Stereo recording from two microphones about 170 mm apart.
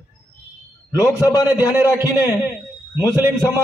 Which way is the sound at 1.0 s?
20° left (ahead or behind).